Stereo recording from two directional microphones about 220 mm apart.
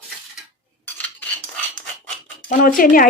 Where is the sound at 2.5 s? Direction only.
40° left (ahead or behind).